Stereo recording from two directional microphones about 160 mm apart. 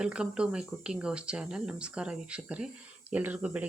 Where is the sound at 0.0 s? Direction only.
5° right (ahead or behind).